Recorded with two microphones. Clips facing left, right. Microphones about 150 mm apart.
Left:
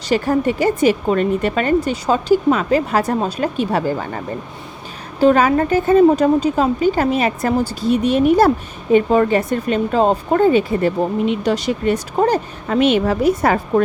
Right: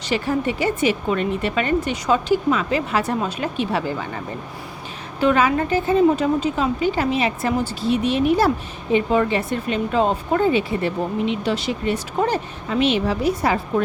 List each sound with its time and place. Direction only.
0.1 s a woman's voice: 45° left (ahead or behind)
5.2 s a woman's voice: 40° left (ahead or behind)